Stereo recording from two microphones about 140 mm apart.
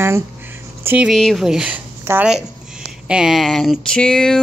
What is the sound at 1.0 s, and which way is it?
A woman's voice, centre (ahead or behind).